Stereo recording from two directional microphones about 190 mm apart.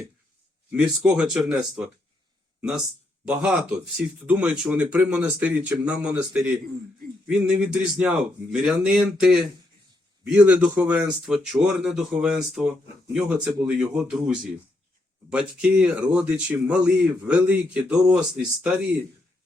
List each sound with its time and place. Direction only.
0.7 s speech: 5° right (ahead or behind)